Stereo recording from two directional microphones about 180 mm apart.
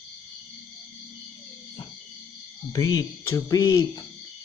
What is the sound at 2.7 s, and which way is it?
Speech, 20° left (ahead or behind).